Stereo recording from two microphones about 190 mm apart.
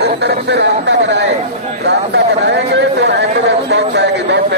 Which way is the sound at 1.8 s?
65° right (ahead or behind).